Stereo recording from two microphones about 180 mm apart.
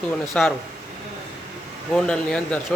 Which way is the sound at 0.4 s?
5° left (ahead or behind).